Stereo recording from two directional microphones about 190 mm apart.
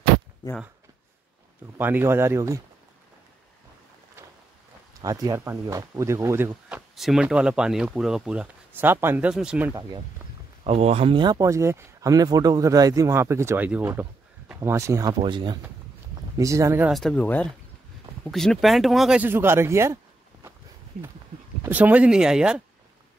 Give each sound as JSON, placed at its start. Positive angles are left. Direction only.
{"t": 1.8, "sound": "speech", "side_deg": -10}
{"t": 5.0, "sound": "speech", "side_deg": -20}
{"t": 10.6, "sound": "speech", "side_deg": -35}
{"t": 16.9, "sound": "speech", "side_deg": 5}
{"t": 21.6, "sound": "speech", "side_deg": -10}